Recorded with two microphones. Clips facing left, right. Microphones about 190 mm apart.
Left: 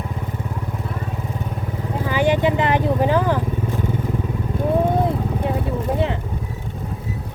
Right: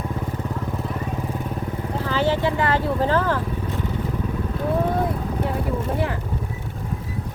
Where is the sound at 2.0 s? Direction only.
15° left (ahead or behind).